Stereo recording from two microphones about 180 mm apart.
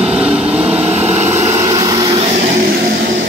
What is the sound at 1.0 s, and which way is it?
Vehicle, 40° right (ahead or behind).